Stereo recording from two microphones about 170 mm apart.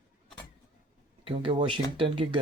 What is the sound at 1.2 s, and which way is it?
Speech, 30° right (ahead or behind).